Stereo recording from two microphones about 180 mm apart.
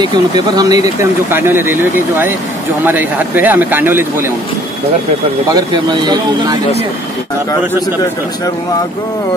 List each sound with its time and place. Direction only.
0.6 s speech: 20° right (ahead or behind)